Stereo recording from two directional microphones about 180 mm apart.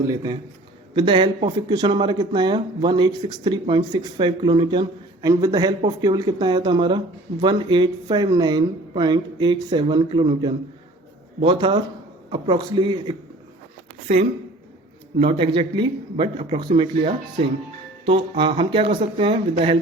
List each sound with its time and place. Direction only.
0.0 s speech: 20° right (ahead or behind)
15.2 s speech: 30° right (ahead or behind)